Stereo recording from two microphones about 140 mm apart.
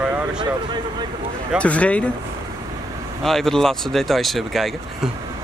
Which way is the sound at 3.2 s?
5° left (ahead or behind).